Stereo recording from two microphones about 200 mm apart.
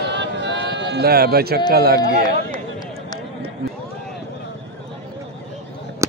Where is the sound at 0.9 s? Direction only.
50° right (ahead or behind).